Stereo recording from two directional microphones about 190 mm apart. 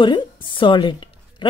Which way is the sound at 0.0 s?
25° left (ahead or behind).